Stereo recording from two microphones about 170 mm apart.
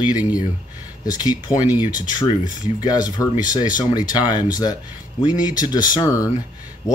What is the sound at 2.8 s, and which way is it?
Speech, 25° left (ahead or behind).